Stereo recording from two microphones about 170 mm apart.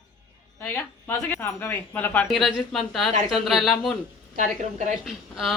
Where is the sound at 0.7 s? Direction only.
15° left (ahead or behind).